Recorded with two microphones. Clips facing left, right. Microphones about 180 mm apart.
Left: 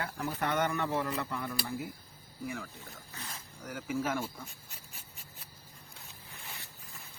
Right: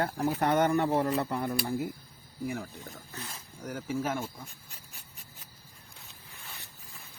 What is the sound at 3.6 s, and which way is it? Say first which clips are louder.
Speech: right 2 dB; 35° right (ahead or behind).